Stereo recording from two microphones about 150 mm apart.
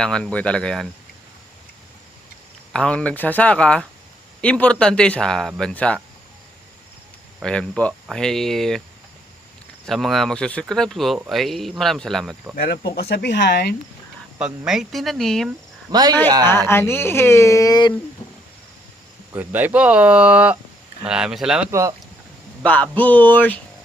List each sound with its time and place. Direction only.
0.0 s speech: 5° left (ahead or behind)
2.7 s speech: 5° left (ahead or behind)
7.4 s speech: 5° left (ahead or behind)
9.8 s speech: centre (ahead or behind)
12.5 s speech: 90° left
14.3 s speech: 5° right (ahead or behind)
15.9 s a man's voice: 25° right (ahead or behind)
16.6 s speech: 15° left (ahead or behind)
19.3 s speech: 10° right (ahead or behind)
21.7 s a man's voice: 20° right (ahead or behind)
22.6 s speech: 10° left (ahead or behind)